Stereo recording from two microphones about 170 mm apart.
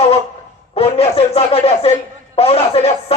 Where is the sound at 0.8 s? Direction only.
35° left (ahead or behind).